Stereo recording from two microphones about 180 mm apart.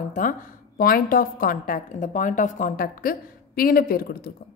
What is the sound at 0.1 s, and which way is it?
A woman's voice, 50° left (ahead or behind).